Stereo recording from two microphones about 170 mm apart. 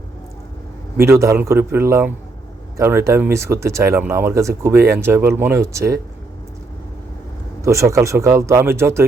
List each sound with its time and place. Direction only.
0.9 s speech: 15° right (ahead or behind)
7.6 s speech: 15° right (ahead or behind)